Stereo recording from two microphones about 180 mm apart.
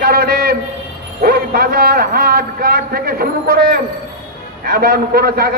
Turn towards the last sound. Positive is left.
turn(degrees=-55)  # may be behind; listen again after turning